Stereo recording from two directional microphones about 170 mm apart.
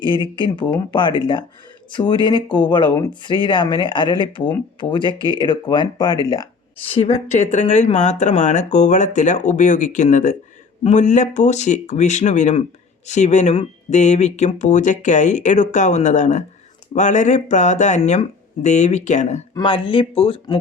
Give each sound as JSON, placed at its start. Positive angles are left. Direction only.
{"t": 0.3, "sound": "speech", "side_deg": 25}
{"t": 6.8, "sound": "speech", "side_deg": 35}
{"t": 19.5, "sound": "speech", "side_deg": 30}